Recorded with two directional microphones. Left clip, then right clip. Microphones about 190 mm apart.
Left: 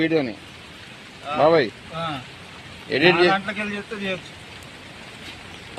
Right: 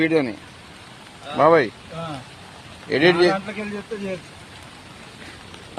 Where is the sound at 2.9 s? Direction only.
20° right (ahead or behind).